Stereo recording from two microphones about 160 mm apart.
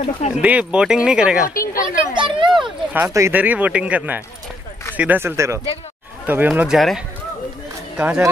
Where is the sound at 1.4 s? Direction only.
20° left (ahead or behind).